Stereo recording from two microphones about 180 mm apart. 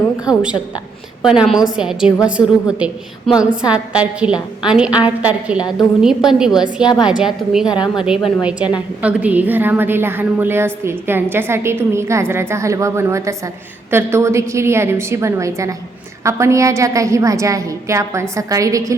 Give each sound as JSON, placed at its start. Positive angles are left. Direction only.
{"t": 1.2, "sound": "a woman's voice", "side_deg": -5}